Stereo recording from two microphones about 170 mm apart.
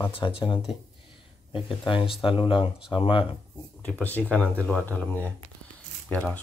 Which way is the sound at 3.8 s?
10° left (ahead or behind).